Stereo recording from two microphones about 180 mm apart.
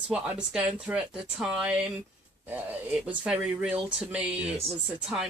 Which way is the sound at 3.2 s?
5° right (ahead or behind).